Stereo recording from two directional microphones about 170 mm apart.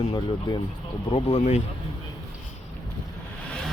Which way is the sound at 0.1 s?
25° left (ahead or behind).